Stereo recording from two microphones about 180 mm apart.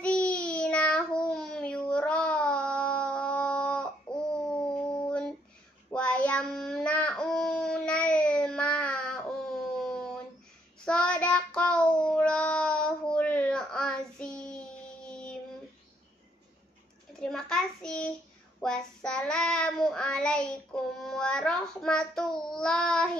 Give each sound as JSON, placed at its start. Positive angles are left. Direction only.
{"t": 0.0, "sound": "child singing", "side_deg": 5}
{"t": 4.7, "sound": "howl", "side_deg": 5}
{"t": 5.9, "sound": "child singing", "side_deg": 5}
{"t": 17.2, "sound": "child singing", "side_deg": 5}